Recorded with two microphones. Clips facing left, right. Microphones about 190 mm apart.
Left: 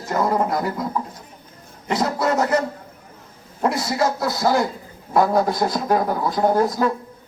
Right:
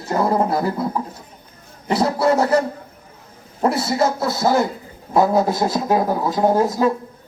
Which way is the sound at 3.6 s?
30° right (ahead or behind).